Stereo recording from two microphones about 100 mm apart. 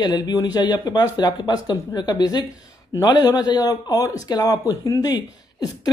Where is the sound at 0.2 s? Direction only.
40° left (ahead or behind).